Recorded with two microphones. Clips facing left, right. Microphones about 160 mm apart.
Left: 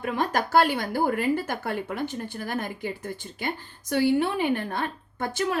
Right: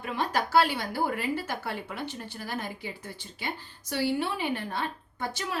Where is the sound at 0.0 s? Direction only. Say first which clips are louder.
Left 3 dB; 50° left (ahead or behind).